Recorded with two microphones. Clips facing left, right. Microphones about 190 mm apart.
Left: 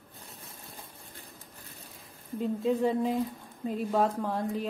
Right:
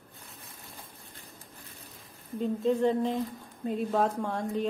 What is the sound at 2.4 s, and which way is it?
A woman's voice, 5° left (ahead or behind).